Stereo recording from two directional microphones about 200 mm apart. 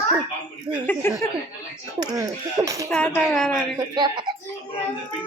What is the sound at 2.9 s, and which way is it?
Speech, 5° left (ahead or behind).